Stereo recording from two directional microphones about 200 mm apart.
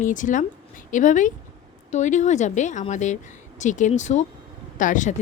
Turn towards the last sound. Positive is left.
turn(degrees=40)  # may be behind; listen again after turning